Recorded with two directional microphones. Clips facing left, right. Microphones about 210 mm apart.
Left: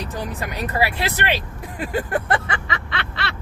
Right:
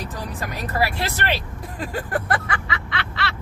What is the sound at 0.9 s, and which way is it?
Speech, 20° left (ahead or behind).